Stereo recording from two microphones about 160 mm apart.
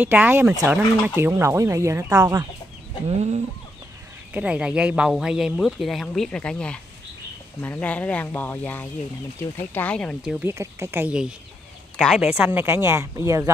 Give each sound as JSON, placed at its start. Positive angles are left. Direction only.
{"t": 0.0, "sound": "speech", "side_deg": -10}
{"t": 3.1, "sound": "chicken", "side_deg": -40}
{"t": 4.3, "sound": "speech", "side_deg": -10}
{"t": 10.4, "sound": "speech", "side_deg": -15}